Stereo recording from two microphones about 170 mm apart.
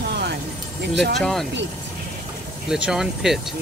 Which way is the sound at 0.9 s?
90° right.